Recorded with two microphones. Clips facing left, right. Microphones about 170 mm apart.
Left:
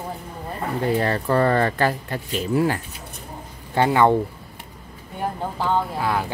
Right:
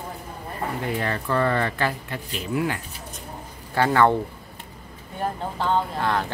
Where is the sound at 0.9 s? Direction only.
35° left (ahead or behind).